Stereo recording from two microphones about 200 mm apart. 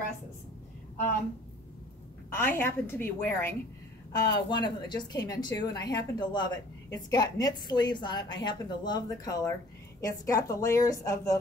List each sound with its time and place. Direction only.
2.3 s a woman's voice: 10° left (ahead or behind)
4.1 s a woman's voice: 20° left (ahead or behind)